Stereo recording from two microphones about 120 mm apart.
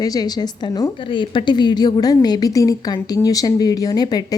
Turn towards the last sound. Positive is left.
turn(degrees=35)  # may be behind; listen again after turning